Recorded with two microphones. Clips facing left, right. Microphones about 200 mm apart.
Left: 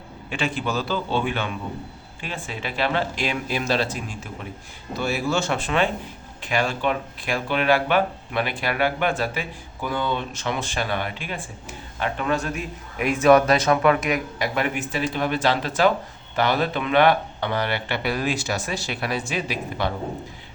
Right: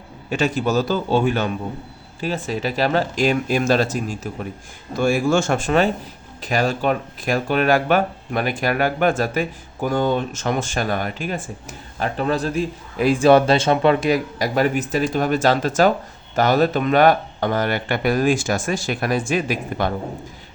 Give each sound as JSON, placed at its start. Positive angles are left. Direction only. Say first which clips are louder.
{"t": 0.3, "sound": "a man's voice", "louder": "right 6 dB", "side_deg": -40}